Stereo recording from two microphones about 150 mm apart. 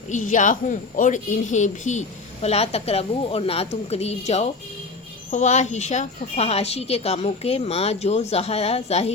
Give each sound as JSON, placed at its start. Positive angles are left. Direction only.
{"t": 0.1, "sound": "speech", "side_deg": 60}